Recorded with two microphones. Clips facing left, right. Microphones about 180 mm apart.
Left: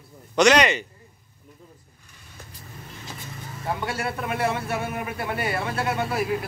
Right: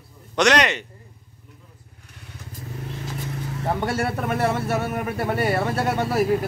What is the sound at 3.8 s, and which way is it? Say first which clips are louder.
Speech: right 4 dB; 45° right (ahead or behind).